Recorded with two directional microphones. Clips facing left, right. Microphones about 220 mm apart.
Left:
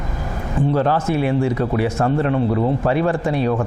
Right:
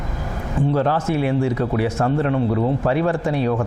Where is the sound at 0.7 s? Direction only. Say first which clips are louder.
Left 1 dB; 25° left (ahead or behind).